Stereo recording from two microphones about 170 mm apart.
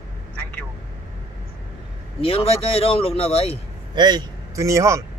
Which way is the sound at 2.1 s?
35° left (ahead or behind).